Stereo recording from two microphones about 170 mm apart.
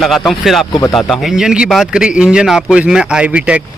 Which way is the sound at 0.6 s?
25° left (ahead or behind).